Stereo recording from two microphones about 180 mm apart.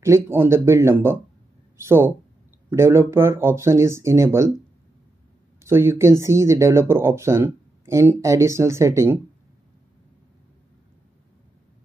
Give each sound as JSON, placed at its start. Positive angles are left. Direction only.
{"t": 0.0, "sound": "speech", "side_deg": -15}
{"t": 5.6, "sound": "speech", "side_deg": -15}